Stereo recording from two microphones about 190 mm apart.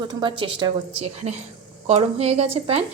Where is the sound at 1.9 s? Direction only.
30° right (ahead or behind).